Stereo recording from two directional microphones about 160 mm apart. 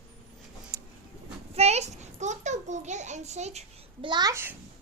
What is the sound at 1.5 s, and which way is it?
A child's voice, 40° right (ahead or behind).